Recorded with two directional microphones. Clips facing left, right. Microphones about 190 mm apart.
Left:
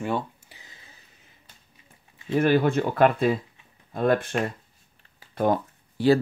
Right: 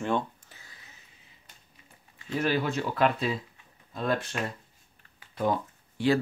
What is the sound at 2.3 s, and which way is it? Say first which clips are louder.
Speech: left 7 dB; 55° left (ahead or behind).